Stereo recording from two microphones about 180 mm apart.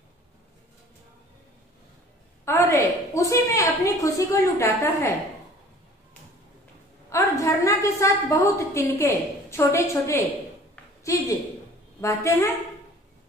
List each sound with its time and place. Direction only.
2.4 s a woman's voice: 15° left (ahead or behind)
7.1 s a woman's voice: 15° left (ahead or behind)
12.0 s a woman's voice: 15° left (ahead or behind)